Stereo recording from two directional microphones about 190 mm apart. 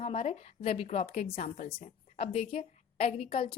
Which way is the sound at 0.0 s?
30° left (ahead or behind).